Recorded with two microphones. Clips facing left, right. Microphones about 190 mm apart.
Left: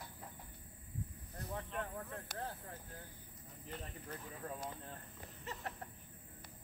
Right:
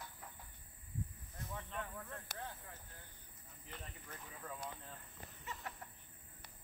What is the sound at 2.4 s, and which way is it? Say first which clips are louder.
Speech: left 4 dB; 35° left (ahead or behind).